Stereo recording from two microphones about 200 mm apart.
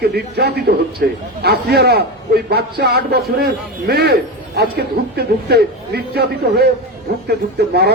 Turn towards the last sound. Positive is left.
turn(degrees=-55)  # may be behind; listen again after turning